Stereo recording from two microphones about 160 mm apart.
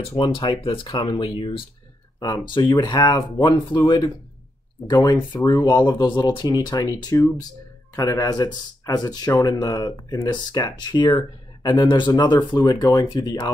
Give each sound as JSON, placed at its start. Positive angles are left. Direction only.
{"t": 0.1, "sound": "speech", "side_deg": 35}